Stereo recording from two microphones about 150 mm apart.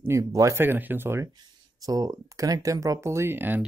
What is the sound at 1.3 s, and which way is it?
Speech, 25° right (ahead or behind).